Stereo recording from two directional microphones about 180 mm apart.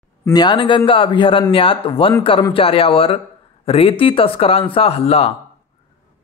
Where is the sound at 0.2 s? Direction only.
25° left (ahead or behind).